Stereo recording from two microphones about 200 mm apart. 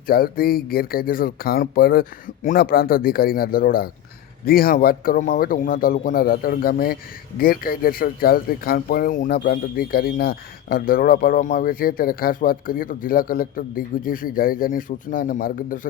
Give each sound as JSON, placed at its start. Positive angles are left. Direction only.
{"t": 0.1, "sound": "speech", "side_deg": 50}